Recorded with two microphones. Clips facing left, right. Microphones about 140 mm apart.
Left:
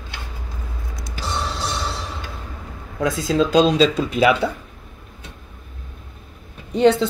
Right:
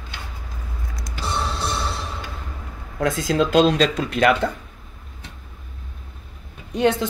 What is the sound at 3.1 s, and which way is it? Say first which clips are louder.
Speech: left 1 dB; centre (ahead or behind).